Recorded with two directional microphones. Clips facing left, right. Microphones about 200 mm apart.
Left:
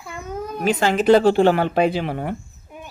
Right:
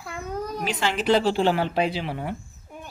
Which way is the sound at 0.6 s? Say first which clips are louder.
Left 9 dB; 45° left (ahead or behind).